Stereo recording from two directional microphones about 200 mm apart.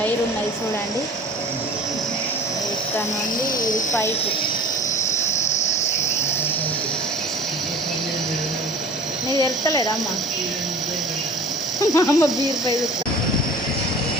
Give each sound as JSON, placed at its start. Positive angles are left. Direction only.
{"t": 9.4, "sound": "speech", "side_deg": 15}
{"t": 11.8, "sound": "speech", "side_deg": 15}